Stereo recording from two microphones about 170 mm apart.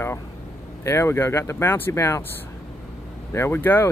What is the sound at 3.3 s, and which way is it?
Speech, 15° left (ahead or behind).